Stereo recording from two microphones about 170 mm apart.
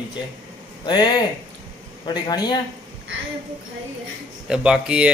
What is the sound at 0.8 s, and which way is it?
Speech, 25° left (ahead or behind).